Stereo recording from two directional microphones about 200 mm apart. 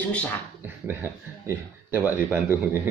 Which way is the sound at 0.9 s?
10° right (ahead or behind).